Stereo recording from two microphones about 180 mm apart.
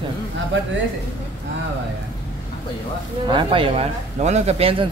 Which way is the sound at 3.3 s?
30° right (ahead or behind).